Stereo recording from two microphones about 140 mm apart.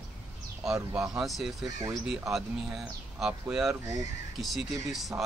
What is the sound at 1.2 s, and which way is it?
Speech, centre (ahead or behind).